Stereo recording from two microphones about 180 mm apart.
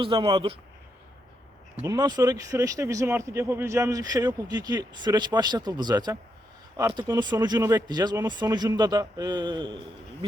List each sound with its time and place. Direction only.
0.0 s speech: 30° right (ahead or behind)
1.8 s speech: 20° right (ahead or behind)